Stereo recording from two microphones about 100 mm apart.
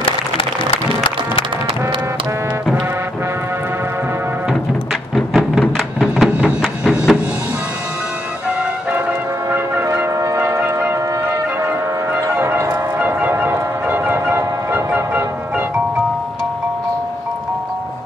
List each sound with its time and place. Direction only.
5.1 s music: centre (ahead or behind)
10.2 s a sound: 25° right (ahead or behind)
12.4 s music: 25° right (ahead or behind)